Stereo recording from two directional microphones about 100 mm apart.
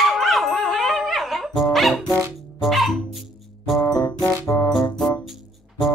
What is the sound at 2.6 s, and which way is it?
Music, centre (ahead or behind).